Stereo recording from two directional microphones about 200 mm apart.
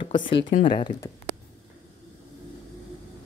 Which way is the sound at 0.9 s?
40° left (ahead or behind).